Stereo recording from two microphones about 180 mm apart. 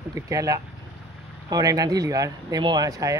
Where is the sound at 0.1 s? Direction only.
20° right (ahead or behind).